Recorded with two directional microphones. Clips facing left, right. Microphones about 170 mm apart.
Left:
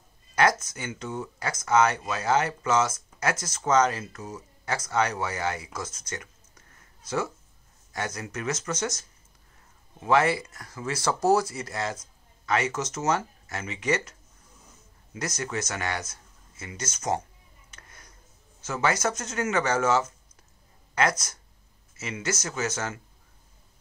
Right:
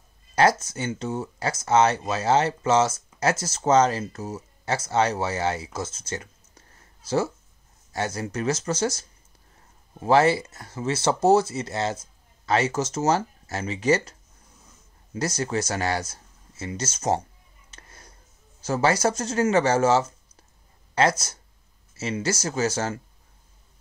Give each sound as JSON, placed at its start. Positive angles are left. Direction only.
{"t": 0.4, "sound": "speech", "side_deg": -30}
{"t": 7.9, "sound": "speech", "side_deg": -30}
{"t": 15.1, "sound": "speech", "side_deg": -30}
{"t": 17.6, "sound": "a sound", "side_deg": -30}
{"t": 18.6, "sound": "speech", "side_deg": -35}